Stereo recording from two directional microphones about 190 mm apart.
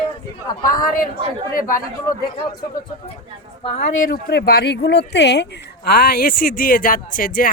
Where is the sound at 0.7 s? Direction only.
45° left (ahead or behind).